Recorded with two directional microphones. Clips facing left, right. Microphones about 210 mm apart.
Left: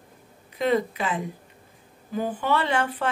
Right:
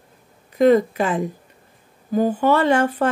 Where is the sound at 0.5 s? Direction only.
45° right (ahead or behind).